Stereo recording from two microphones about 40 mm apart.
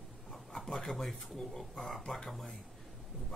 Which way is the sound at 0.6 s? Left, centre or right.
Centre.